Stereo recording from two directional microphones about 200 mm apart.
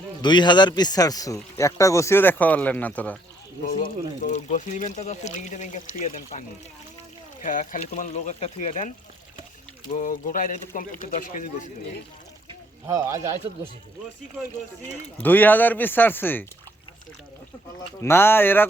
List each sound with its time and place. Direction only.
0.2 s speech: 20° left (ahead or behind)
3.7 s speech: 40° left (ahead or behind)
7.4 s speech: 40° left (ahead or behind)
9.9 s speech: 40° left (ahead or behind)
12.5 s boat: 15° right (ahead or behind)
15.2 s speech: 10° left (ahead or behind)
18.0 s speech: 10° left (ahead or behind)